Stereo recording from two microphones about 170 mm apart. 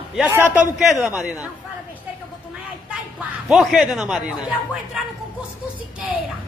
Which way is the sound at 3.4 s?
Centre (ahead or behind).